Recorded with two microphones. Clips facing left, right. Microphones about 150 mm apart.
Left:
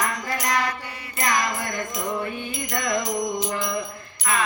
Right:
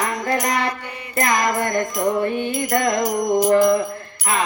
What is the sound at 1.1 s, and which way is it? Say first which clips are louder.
Music: right 5 dB; 50° right (ahead or behind).